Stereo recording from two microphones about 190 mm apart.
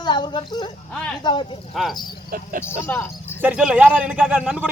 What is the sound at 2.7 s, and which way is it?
Speech, 10° left (ahead or behind).